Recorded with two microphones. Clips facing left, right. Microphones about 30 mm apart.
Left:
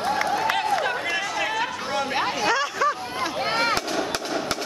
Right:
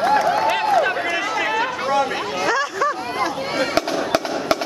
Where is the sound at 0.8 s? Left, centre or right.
Centre.